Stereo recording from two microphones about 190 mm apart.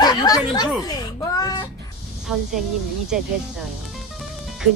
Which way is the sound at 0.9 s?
20° left (ahead or behind).